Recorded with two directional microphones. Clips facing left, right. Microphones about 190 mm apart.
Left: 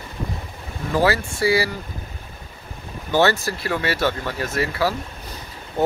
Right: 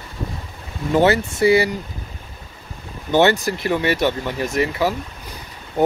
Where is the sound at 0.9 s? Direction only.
20° right (ahead or behind).